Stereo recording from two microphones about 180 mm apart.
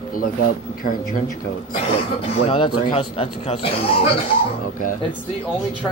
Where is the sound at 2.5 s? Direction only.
30° left (ahead or behind).